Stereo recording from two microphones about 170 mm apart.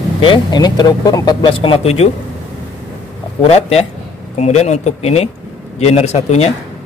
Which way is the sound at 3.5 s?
40° left (ahead or behind).